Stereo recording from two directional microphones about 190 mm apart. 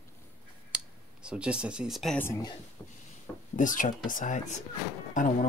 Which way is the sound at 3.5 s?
45° left (ahead or behind).